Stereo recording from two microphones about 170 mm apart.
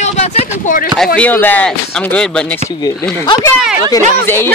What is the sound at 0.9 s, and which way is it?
Speech, 5° left (ahead or behind).